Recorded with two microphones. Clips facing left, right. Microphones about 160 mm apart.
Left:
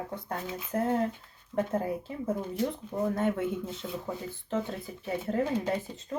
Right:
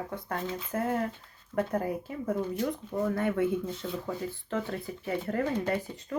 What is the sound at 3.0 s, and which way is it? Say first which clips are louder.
Speech: right 1 dB; 20° left (ahead or behind).